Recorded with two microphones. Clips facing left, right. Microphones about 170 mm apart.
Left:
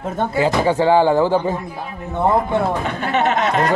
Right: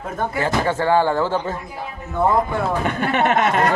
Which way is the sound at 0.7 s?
15° left (ahead or behind).